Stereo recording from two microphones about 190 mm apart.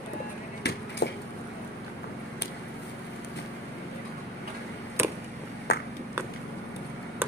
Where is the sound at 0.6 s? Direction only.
65° left (ahead or behind).